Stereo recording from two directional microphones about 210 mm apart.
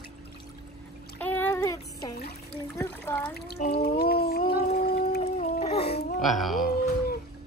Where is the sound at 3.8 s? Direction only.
50° left (ahead or behind).